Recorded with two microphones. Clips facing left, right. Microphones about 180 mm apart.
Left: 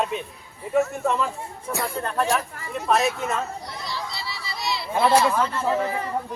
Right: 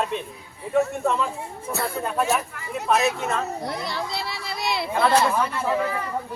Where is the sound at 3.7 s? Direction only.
55° right (ahead or behind).